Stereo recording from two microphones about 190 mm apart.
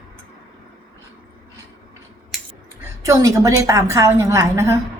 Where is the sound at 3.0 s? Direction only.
15° right (ahead or behind).